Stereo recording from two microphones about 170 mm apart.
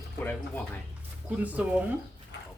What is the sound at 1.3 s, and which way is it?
Speech, 10° right (ahead or behind).